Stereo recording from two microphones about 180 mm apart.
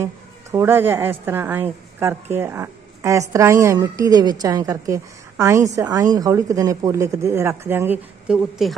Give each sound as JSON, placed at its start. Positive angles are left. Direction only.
{"t": 0.0, "sound": "a woman's voice", "side_deg": -15}